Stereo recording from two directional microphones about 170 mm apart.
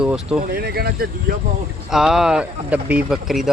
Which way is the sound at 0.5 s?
70° right (ahead or behind).